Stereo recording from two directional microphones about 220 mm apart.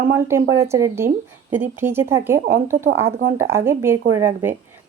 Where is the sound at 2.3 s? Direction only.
35° right (ahead or behind).